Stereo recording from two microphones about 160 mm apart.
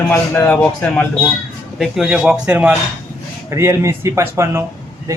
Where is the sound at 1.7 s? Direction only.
Centre (ahead or behind).